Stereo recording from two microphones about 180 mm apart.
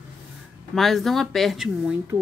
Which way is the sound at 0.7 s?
Centre (ahead or behind).